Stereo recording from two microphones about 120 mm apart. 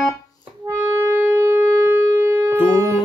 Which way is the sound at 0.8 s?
20° right (ahead or behind).